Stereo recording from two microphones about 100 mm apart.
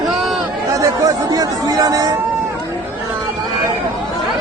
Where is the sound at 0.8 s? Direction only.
35° right (ahead or behind).